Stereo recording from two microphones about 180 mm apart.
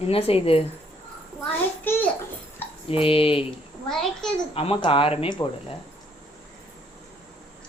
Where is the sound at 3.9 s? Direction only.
5° left (ahead or behind).